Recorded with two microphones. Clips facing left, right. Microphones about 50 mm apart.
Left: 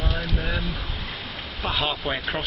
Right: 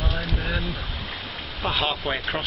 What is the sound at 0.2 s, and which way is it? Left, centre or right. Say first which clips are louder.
Speech: even; centre.